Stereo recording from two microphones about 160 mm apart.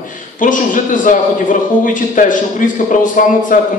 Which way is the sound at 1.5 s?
55° left (ahead or behind).